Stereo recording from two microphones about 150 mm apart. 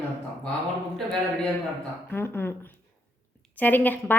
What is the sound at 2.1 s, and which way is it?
A woman's voice, 15° left (ahead or behind).